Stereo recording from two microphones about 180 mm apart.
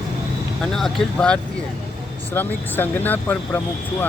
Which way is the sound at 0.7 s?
5° left (ahead or behind).